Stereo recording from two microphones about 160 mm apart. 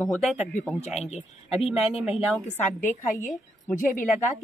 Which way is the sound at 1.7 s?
40° left (ahead or behind).